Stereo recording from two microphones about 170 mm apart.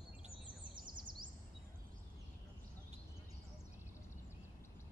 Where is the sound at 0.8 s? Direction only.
25° right (ahead or behind).